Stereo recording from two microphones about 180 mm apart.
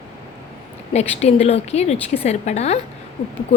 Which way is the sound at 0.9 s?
35° left (ahead or behind).